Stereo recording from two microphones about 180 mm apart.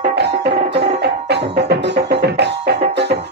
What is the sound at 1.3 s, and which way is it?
Music, 70° right (ahead or behind).